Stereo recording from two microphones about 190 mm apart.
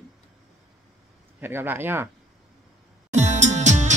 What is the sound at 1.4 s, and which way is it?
Speech, 10° right (ahead or behind).